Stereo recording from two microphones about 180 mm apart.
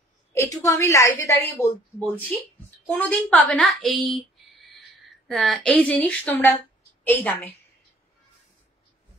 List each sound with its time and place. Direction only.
0.3 s a woman's voice: 15° left (ahead or behind)